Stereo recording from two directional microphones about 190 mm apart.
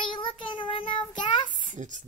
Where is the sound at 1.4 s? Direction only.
40° right (ahead or behind).